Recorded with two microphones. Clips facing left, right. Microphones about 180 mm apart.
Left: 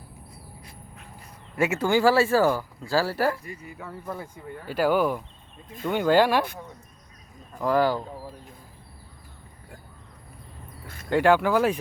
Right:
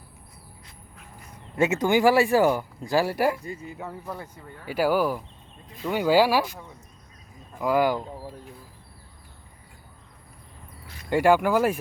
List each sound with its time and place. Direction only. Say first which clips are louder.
1.5 s speech: right 1 dB; 20° right (ahead or behind)
3.4 s speech: right 4 dB; 25° right (ahead or behind)
4.6 s speech: even; 10° right (ahead or behind)
7.6 s speech: even; 10° right (ahead or behind)
11.1 s speech: even; 10° right (ahead or behind)